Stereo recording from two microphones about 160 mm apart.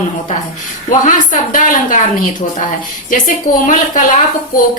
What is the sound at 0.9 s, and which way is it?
A woman's voice, 55° left (ahead or behind).